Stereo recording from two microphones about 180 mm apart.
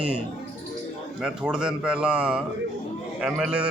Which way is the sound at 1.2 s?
5° right (ahead or behind).